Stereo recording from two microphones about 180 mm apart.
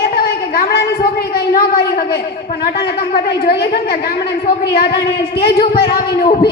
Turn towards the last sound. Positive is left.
turn(degrees=60)  # may be behind; listen again after turning